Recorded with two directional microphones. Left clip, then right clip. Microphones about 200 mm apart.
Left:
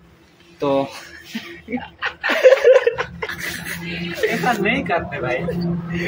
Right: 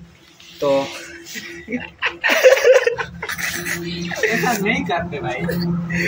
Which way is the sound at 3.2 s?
5° left (ahead or behind).